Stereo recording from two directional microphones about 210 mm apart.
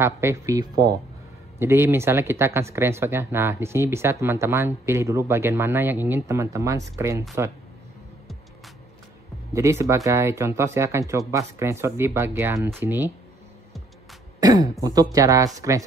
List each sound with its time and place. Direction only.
0.0 s speech: 10° right (ahead or behind)
9.5 s speech: 15° right (ahead or behind)
14.4 s speech: 20° right (ahead or behind)